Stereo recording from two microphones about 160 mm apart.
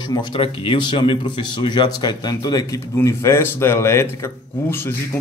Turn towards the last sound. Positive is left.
turn(degrees=15)  # may be behind; listen again after turning